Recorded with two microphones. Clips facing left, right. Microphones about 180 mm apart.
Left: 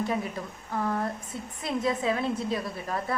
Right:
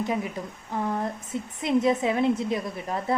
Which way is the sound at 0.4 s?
20° right (ahead or behind).